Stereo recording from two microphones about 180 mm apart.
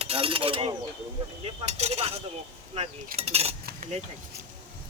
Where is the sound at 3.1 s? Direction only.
35° right (ahead or behind).